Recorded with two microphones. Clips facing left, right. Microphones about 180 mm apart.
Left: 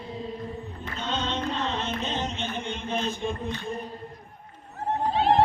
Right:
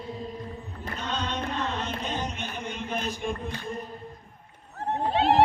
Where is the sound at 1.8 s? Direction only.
25° left (ahead or behind).